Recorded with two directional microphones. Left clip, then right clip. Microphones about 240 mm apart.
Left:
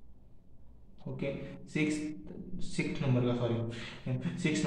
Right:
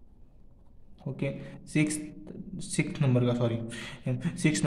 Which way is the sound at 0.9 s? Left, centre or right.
Right.